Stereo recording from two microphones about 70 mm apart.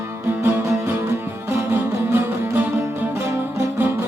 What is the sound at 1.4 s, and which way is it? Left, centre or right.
Music, right.